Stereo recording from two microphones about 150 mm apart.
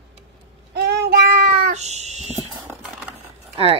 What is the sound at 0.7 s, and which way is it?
Child singing, 90° right.